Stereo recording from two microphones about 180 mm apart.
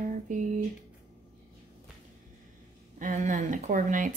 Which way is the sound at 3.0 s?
45° right (ahead or behind).